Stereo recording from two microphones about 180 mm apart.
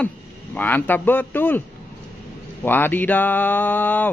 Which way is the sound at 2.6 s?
10° left (ahead or behind).